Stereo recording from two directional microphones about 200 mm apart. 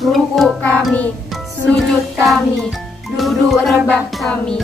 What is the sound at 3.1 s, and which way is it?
Music, centre (ahead or behind).